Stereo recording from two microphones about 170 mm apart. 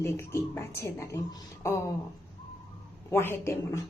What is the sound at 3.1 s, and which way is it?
Speech, 15° left (ahead or behind).